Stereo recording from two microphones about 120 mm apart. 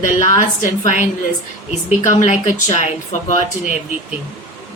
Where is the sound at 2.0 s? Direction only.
75° left (ahead or behind).